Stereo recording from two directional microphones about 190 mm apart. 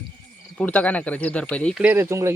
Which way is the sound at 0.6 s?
5° left (ahead or behind).